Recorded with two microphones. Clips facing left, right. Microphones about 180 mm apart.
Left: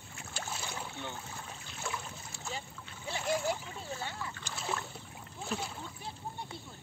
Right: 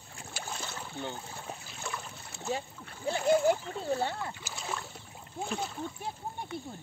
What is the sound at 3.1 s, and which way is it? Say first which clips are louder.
Speech: right 8 dB; 55° right (ahead or behind).